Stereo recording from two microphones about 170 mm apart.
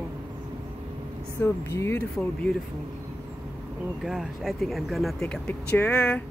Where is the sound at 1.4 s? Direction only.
15° left (ahead or behind).